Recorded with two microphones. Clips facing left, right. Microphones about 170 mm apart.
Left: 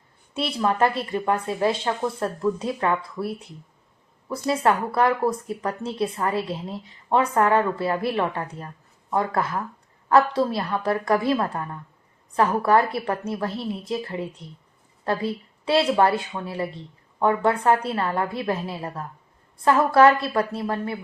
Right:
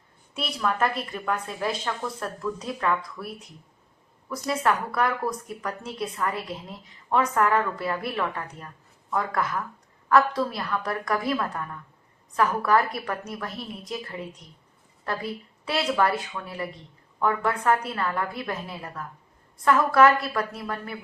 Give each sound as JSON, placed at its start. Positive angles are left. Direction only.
{"t": 0.3, "sound": "a woman's voice", "side_deg": 30}